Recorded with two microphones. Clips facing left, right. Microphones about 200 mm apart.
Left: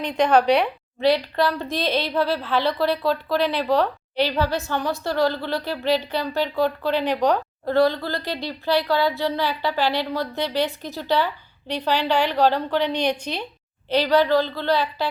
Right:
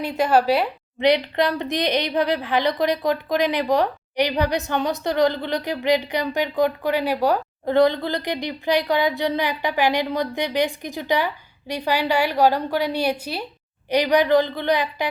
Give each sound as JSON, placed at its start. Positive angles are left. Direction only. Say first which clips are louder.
{"t": 0.0, "sound": "a woman's voice", "louder": "left 1 dB", "side_deg": -5}
{"t": 0.9, "sound": "a woman's voice", "louder": "right 1 dB", "side_deg": -20}
{"t": 7.8, "sound": "a woman's voice", "louder": "right 2 dB", "side_deg": -20}